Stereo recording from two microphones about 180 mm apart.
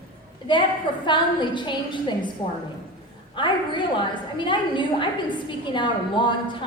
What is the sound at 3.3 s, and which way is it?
A woman's voice, 25° left (ahead or behind).